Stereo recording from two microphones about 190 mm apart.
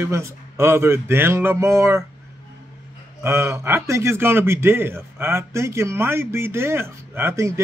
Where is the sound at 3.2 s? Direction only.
15° right (ahead or behind).